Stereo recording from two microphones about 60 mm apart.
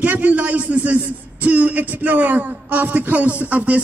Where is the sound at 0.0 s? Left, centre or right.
Right.